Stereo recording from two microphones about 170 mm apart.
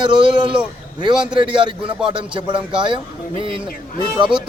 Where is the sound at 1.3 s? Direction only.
30° right (ahead or behind).